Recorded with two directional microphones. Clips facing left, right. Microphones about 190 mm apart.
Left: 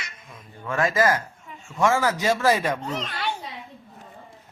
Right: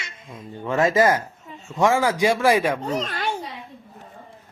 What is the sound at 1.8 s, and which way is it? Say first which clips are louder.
A man's voice: right 3 dB; 15° right (ahead or behind).